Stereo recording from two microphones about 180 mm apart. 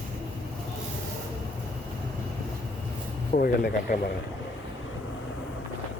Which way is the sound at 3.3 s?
50° left (ahead or behind).